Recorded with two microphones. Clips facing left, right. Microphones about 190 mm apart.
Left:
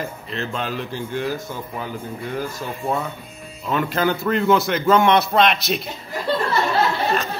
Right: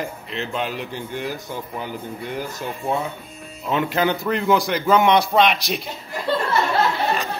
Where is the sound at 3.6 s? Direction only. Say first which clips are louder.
Even; 15° right (ahead or behind).